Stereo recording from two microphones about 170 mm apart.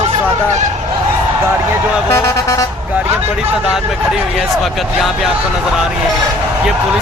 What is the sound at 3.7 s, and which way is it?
Speech, 5° right (ahead or behind).